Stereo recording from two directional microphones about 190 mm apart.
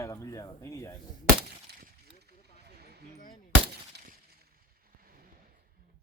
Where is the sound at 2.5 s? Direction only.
55° right (ahead or behind).